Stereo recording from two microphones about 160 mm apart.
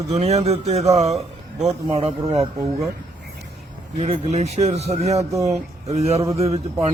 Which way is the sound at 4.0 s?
45° right (ahead or behind).